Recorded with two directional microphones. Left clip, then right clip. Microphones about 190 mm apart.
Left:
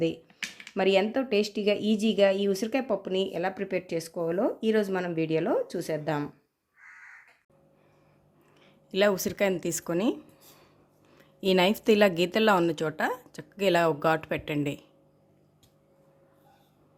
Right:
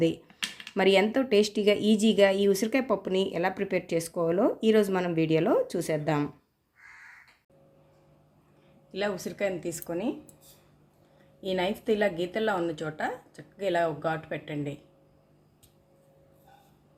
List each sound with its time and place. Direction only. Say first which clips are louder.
0.0 s speech: right 2 dB; centre (ahead or behind)
8.9 s a woman's voice: left 7 dB; 50° left (ahead or behind)
11.3 s a woman's voice: left 6 dB; 55° left (ahead or behind)